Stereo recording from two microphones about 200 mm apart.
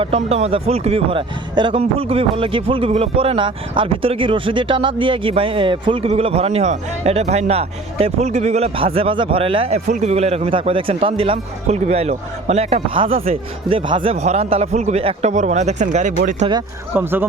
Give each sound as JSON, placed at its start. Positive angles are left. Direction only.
{"t": 0.0, "sound": "speech", "side_deg": -30}
{"t": 16.9, "sound": "speech", "side_deg": -10}